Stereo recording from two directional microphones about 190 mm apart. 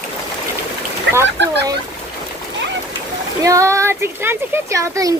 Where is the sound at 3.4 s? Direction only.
15° right (ahead or behind).